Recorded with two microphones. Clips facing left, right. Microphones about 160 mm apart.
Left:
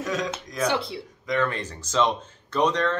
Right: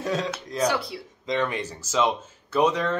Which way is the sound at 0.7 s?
25° left (ahead or behind).